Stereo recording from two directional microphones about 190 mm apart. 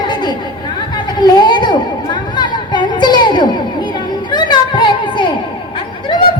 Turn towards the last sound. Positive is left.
turn(degrees=25)  # may be behind; listen again after turning